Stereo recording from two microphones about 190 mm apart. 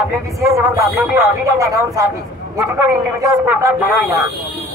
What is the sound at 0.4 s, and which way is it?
Speech, 15° right (ahead or behind).